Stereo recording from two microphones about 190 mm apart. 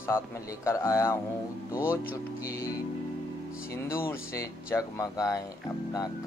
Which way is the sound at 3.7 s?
10° left (ahead or behind).